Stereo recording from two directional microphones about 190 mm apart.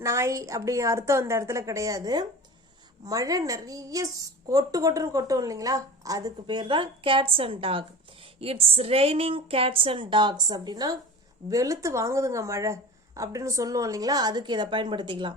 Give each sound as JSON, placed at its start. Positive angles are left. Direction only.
{"t": 0.0, "sound": "a woman's voice", "side_deg": -15}